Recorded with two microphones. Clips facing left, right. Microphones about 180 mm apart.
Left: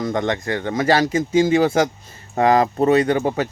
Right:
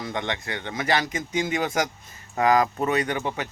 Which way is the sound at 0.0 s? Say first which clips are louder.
Left 8 dB; 45° left (ahead or behind).